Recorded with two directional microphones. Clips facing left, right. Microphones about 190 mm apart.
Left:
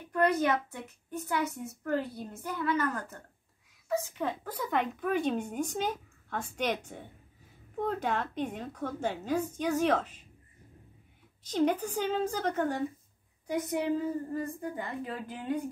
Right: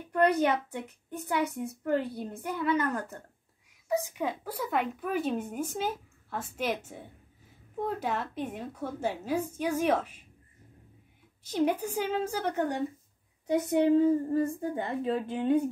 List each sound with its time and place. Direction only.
1.1 s a woman's voice: 15° right (ahead or behind)
11.4 s a woman's voice: 10° right (ahead or behind)
13.5 s a woman's voice: 25° right (ahead or behind)